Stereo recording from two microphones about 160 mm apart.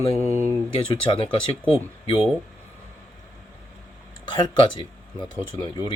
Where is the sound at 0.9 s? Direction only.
30° left (ahead or behind).